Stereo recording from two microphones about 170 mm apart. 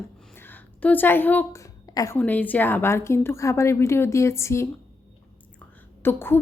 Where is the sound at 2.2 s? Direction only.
10° left (ahead or behind).